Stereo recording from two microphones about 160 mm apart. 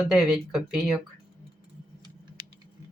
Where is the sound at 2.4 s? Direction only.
30° right (ahead or behind).